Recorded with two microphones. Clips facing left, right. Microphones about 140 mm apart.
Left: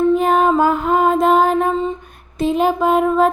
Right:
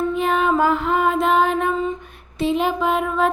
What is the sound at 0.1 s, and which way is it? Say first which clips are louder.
Music: left 5 dB; 40° left (ahead or behind).